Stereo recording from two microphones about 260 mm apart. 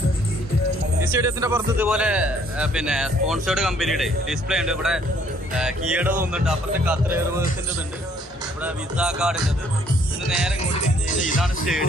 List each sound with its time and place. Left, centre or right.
1.1 s a man's voice: centre
8.6 s a man's voice: centre
10.7 s music: left
11.4 s a man's voice: centre